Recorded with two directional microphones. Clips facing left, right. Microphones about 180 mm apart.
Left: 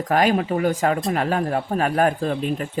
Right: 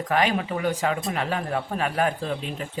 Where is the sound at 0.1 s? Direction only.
40° left (ahead or behind).